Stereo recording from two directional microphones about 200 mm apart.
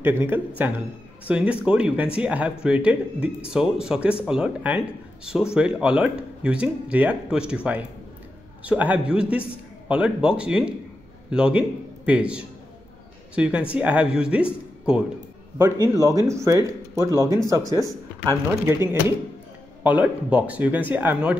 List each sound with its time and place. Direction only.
0.0 s speech: 10° right (ahead or behind)
19.8 s speech: 5° right (ahead or behind)